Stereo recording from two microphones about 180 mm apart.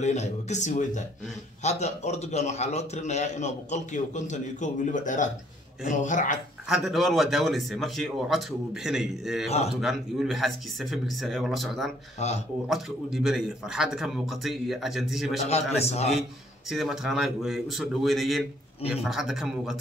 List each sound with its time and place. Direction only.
0.0 s a man's voice: 40° left (ahead or behind)
6.7 s speech: centre (ahead or behind)
15.7 s a man's voice: 35° left (ahead or behind)
16.7 s speech: centre (ahead or behind)